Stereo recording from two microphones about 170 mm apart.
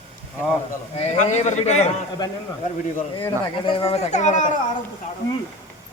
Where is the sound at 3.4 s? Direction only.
30° left (ahead or behind).